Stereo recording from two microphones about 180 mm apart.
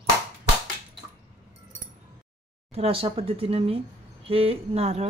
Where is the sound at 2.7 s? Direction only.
30° right (ahead or behind).